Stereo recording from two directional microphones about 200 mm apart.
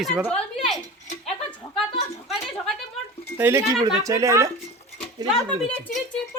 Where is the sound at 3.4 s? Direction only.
10° right (ahead or behind).